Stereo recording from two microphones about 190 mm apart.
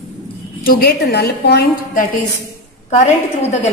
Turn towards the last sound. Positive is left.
turn(degrees=35)  # may be behind; listen again after turning